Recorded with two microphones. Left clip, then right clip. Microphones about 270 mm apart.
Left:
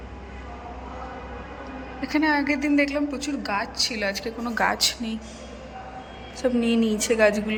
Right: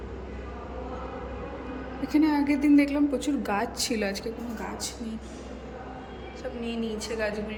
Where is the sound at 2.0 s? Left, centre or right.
Centre.